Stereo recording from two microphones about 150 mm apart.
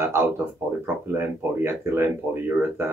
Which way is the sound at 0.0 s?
15° right (ahead or behind).